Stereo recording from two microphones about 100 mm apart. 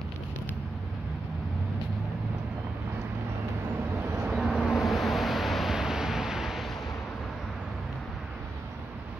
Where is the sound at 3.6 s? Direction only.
20° right (ahead or behind).